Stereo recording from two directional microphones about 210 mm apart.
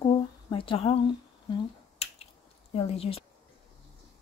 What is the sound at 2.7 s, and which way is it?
Speech, 30° left (ahead or behind).